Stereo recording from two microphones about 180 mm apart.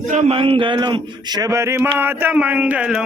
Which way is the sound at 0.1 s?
35° right (ahead or behind).